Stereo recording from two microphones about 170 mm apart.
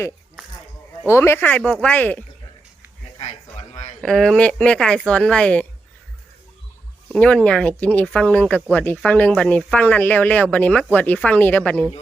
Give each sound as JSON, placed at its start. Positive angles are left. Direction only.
{"t": 1.1, "sound": "speech", "side_deg": 15}
{"t": 3.2, "sound": "a sound", "side_deg": 35}
{"t": 4.0, "sound": "speech", "side_deg": 0}
{"t": 7.1, "sound": "speech", "side_deg": 5}